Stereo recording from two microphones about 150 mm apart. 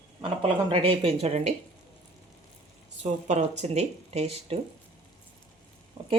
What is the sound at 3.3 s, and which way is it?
Speech, 50° right (ahead or behind).